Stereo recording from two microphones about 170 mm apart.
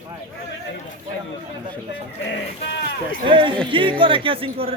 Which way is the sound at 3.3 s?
30° right (ahead or behind).